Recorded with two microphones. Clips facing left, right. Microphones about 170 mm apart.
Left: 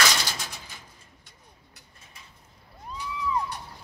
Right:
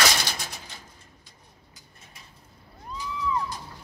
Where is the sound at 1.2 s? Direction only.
65° left (ahead or behind).